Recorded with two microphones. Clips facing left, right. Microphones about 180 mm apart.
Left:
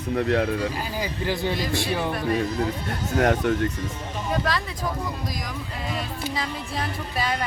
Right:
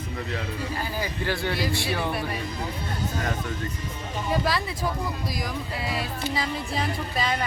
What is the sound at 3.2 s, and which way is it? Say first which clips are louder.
Speech: left 9 dB; 70° left (ahead or behind).